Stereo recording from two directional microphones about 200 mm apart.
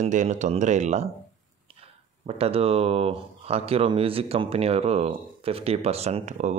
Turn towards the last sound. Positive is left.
turn(degrees=-35)  # may be behind; listen again after turning